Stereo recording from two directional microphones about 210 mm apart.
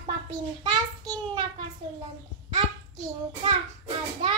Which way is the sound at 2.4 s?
25° right (ahead or behind).